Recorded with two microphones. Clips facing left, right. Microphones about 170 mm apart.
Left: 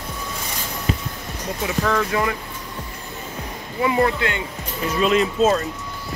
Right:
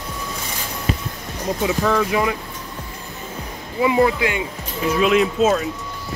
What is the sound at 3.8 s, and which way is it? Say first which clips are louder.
Speech: right 3 dB; 10° right (ahead or behind).